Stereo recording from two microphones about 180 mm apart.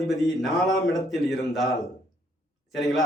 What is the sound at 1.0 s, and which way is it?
Speech, centre (ahead or behind).